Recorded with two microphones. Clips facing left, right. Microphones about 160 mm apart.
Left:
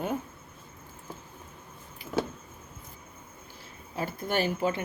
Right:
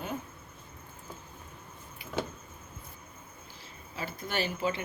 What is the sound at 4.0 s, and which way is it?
Speech, 50° left (ahead or behind).